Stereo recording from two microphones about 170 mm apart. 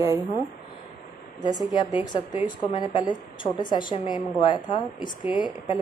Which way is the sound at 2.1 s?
30° left (ahead or behind).